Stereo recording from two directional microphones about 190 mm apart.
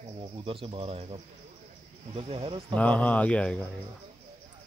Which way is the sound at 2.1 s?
30° right (ahead or behind).